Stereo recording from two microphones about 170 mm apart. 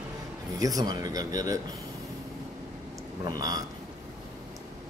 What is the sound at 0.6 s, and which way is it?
Speech, 20° right (ahead or behind).